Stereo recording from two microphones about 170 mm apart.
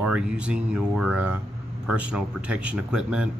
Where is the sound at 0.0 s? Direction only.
5° right (ahead or behind).